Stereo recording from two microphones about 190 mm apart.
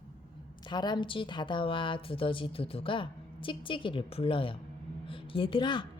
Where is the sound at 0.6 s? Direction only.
25° left (ahead or behind).